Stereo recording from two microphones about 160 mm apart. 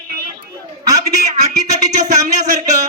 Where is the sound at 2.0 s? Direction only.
45° right (ahead or behind).